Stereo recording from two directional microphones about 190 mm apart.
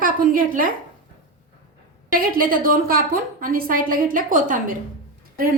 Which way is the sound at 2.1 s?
50° right (ahead or behind).